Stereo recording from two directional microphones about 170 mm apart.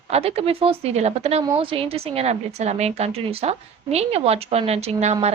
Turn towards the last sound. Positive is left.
turn(degrees=-40)  # may be behind; listen again after turning